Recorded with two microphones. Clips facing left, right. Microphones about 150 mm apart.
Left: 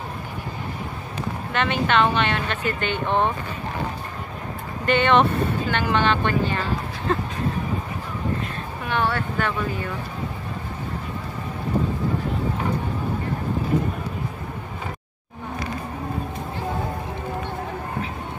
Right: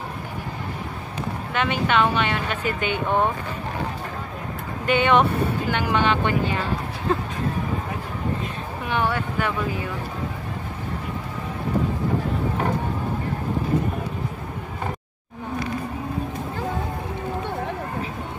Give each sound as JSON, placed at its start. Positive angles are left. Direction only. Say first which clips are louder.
{"t": 1.5, "sound": "speech", "louder": "left 1 dB", "side_deg": -5}
{"t": 4.8, "sound": "speech", "louder": "even", "side_deg": -10}
{"t": 8.8, "sound": "speech", "louder": "even", "side_deg": -15}